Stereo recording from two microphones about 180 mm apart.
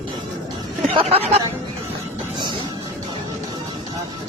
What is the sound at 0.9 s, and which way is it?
Speech, 30° right (ahead or behind).